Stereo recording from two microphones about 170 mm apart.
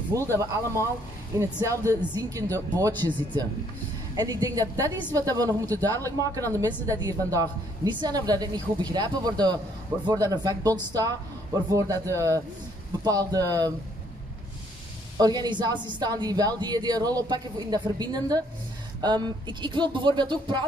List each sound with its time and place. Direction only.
0.1 s a woman's voice: 15° right (ahead or behind)
15.1 s a woman's voice: 25° right (ahead or behind)